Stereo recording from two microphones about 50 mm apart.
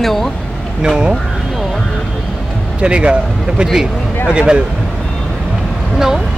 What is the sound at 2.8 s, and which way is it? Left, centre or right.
Speech, right.